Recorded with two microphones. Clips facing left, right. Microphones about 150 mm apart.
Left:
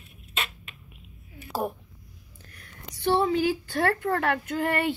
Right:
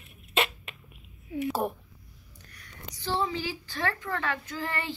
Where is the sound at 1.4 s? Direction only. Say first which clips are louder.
Even; centre (ahead or behind).